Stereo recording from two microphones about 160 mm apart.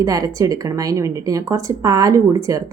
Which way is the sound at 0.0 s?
20° right (ahead or behind).